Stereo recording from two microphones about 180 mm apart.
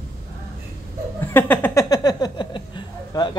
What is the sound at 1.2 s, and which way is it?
Speech, 10° left (ahead or behind).